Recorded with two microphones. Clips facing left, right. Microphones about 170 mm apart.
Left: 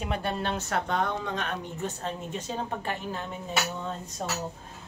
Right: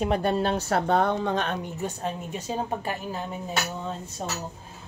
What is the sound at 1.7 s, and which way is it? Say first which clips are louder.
A woman's voice: right 3 dB; 10° right (ahead or behind).